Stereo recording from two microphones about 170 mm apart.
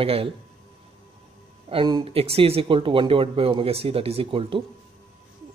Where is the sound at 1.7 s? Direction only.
30° right (ahead or behind).